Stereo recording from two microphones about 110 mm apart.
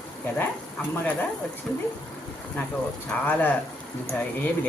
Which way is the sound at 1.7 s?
10° left (ahead or behind).